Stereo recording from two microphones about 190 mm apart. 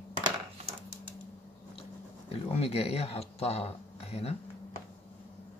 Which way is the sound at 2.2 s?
30° left (ahead or behind).